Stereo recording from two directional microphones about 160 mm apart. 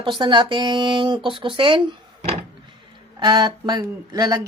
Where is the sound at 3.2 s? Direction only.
25° right (ahead or behind).